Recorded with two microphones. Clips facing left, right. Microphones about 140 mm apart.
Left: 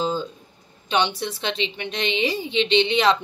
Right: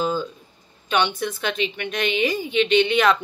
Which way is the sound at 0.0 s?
25° left (ahead or behind).